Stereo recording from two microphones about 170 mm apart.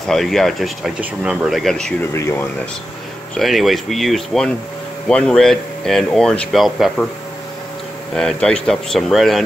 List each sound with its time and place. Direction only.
0.1 s speech: centre (ahead or behind)
2.1 s speech: 15° left (ahead or behind)
3.3 s speech: centre (ahead or behind)
8.2 s speech: 5° left (ahead or behind)